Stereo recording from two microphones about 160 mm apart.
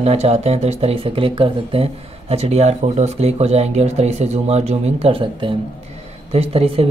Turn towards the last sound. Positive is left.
turn(degrees=-35)  # may be behind; listen again after turning